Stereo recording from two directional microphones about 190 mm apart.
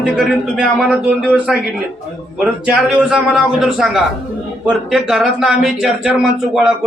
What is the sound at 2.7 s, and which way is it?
A man's voice, 5° right (ahead or behind).